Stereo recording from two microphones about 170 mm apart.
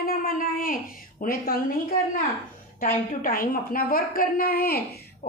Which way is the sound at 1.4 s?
55° left (ahead or behind).